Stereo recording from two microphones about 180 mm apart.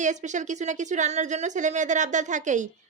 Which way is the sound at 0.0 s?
40° right (ahead or behind).